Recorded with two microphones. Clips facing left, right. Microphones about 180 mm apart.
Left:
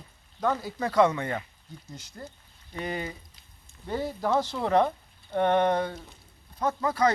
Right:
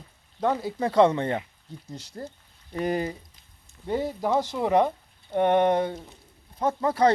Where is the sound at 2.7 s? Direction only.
45° right (ahead or behind).